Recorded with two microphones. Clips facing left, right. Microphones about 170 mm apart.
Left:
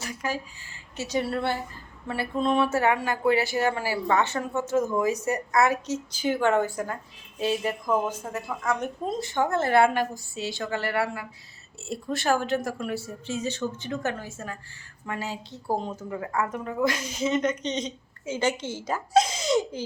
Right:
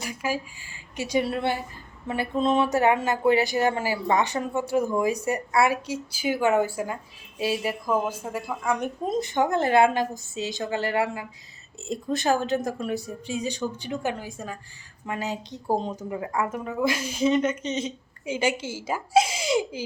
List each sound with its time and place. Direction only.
0.0 s a woman's voice: 10° right (ahead or behind)
2.0 s a sound: 20° right (ahead or behind)
2.7 s a woman's voice: 20° right (ahead or behind)